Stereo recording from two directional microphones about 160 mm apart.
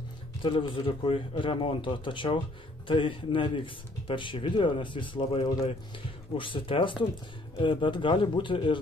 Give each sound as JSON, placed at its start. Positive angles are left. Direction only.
{"t": 0.4, "sound": "speech", "side_deg": 30}